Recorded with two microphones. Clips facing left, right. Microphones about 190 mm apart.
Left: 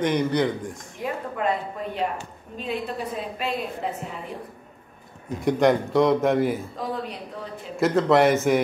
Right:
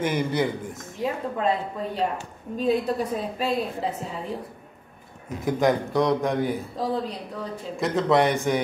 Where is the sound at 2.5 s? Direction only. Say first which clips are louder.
Right 7 dB; 40° right (ahead or behind).